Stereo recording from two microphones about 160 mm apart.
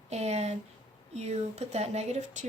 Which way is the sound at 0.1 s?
45° right (ahead or behind).